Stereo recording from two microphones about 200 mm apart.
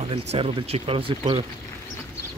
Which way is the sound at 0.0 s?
30° right (ahead or behind).